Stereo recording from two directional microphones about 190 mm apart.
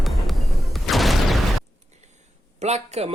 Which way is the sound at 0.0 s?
Centre (ahead or behind).